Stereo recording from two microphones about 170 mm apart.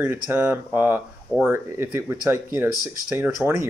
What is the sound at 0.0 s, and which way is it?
Speech, 10° right (ahead or behind).